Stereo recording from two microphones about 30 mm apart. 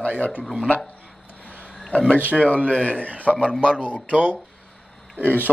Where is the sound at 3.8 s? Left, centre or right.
Right.